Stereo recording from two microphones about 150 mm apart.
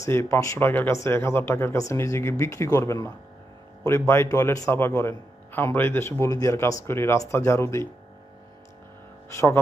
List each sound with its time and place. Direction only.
0.0 s a man's voice: 20° left (ahead or behind)